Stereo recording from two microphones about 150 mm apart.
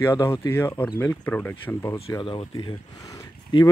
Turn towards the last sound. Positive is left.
turn(degrees=25)  # may be behind; listen again after turning